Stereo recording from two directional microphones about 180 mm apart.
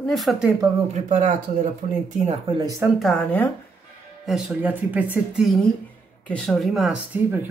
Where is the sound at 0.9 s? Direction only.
45° right (ahead or behind).